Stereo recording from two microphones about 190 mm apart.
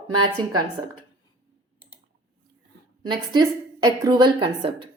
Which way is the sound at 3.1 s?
25° right (ahead or behind).